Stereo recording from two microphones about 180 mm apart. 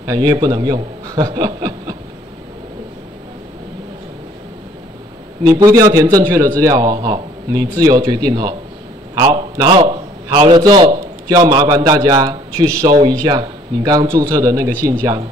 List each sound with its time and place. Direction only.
0.0 s speech: 20° right (ahead or behind)
5.4 s a man's voice: 20° right (ahead or behind)